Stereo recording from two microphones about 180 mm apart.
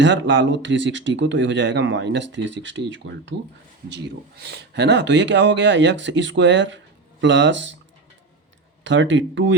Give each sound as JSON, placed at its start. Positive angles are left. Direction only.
{"t": 0.0, "sound": "speech", "side_deg": -90}
{"t": 3.8, "sound": "speech", "side_deg": -70}
{"t": 8.8, "sound": "speech", "side_deg": -90}